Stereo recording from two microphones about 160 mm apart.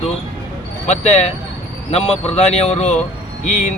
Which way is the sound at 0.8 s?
45° left (ahead or behind).